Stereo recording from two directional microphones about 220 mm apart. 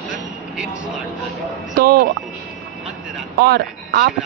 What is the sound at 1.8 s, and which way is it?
Speech, 45° right (ahead or behind).